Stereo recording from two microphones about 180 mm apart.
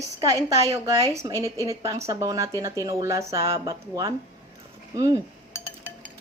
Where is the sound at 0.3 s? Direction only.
20° right (ahead or behind).